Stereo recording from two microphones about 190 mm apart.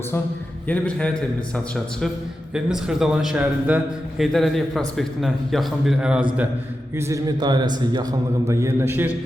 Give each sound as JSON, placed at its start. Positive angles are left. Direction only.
{"t": 0.7, "sound": "a man's voice", "side_deg": 5}
{"t": 6.9, "sound": "a man's voice", "side_deg": -15}